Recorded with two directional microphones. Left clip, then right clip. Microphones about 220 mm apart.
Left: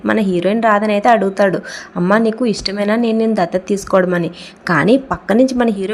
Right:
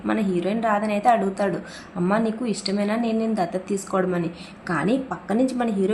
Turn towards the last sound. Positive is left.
turn(degrees=35)  # may be behind; listen again after turning